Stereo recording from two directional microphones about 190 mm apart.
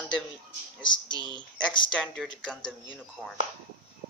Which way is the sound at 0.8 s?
25° left (ahead or behind).